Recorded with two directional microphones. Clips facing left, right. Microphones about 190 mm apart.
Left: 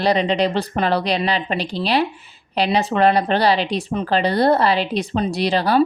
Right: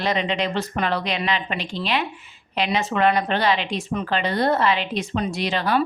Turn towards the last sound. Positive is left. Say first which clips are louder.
# left 4 dB
turn(degrees=35)  # may be behind; listen again after turning